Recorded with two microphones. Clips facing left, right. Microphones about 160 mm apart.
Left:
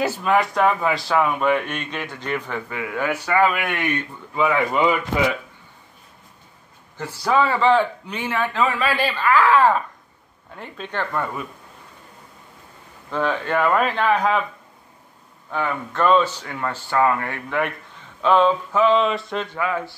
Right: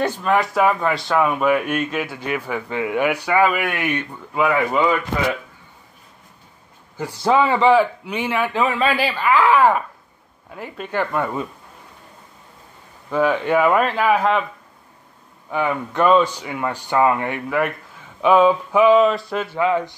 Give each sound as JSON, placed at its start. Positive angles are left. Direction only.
{"t": 0.0, "sound": "speech", "side_deg": 5}
{"t": 2.7, "sound": "speech", "side_deg": -25}
{"t": 7.2, "sound": "speech", "side_deg": -20}
{"t": 13.1, "sound": "speech", "side_deg": -10}
{"t": 15.5, "sound": "speech", "side_deg": -15}
{"t": 17.5, "sound": "speech", "side_deg": 0}
{"t": 19.6, "sound": "speech", "side_deg": -20}